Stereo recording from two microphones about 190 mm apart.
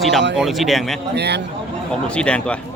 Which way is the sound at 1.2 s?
60° right (ahead or behind).